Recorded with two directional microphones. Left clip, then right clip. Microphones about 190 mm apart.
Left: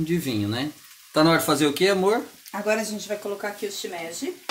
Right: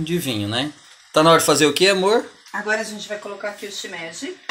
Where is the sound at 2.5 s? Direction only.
30° left (ahead or behind).